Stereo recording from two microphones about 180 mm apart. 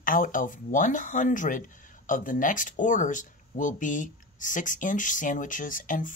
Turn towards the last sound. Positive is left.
turn(degrees=45)  # may be behind; listen again after turning